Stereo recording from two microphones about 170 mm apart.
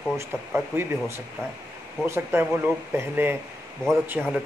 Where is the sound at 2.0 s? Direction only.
15° right (ahead or behind).